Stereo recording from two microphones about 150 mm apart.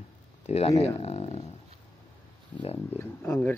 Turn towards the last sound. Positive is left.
turn(degrees=15)  # may be behind; listen again after turning